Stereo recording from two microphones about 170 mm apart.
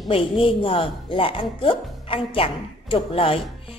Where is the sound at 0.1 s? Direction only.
30° left (ahead or behind).